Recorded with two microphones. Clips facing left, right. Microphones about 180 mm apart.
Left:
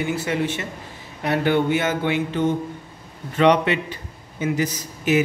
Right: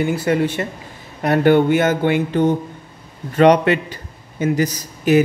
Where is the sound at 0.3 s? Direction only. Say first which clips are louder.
Right 6 dB; 45° right (ahead or behind).